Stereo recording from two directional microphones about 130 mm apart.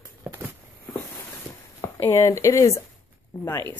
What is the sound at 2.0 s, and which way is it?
Speech, 20° left (ahead or behind).